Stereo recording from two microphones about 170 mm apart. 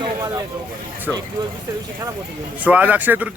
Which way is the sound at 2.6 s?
10° right (ahead or behind).